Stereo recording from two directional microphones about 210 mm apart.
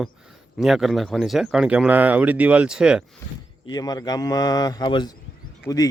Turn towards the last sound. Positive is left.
turn(degrees=15)  # may be behind; listen again after turning